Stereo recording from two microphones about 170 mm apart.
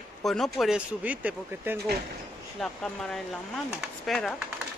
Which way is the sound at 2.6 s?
5° left (ahead or behind).